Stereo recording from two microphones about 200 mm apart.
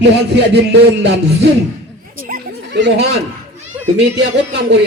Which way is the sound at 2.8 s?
60° right (ahead or behind).